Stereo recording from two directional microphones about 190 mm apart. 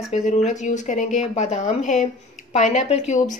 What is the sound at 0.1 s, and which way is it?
A woman's voice, 35° left (ahead or behind).